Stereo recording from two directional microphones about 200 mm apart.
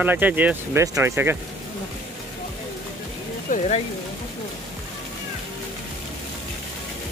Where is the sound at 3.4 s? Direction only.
35° left (ahead or behind).